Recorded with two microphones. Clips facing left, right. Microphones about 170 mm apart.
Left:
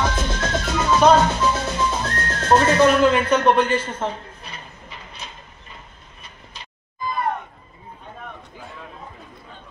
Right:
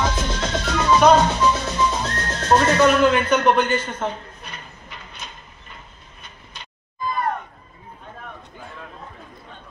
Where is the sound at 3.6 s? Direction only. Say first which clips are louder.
Left 1 dB; 30° left (ahead or behind).